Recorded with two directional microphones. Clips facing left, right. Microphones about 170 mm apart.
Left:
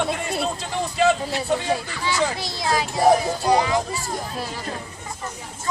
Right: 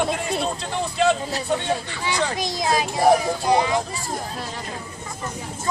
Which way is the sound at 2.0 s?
15° right (ahead or behind).